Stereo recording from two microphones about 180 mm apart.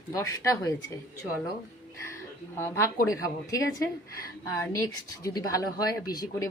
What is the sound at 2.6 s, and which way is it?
Speech, 15° left (ahead or behind).